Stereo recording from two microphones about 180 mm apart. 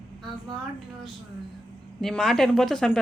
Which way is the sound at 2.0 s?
Centre (ahead or behind).